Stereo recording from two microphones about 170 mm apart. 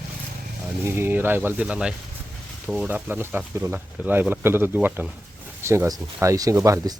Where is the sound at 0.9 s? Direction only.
15° right (ahead or behind).